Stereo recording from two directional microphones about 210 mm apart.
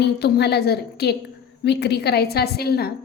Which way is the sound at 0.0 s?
50° left (ahead or behind).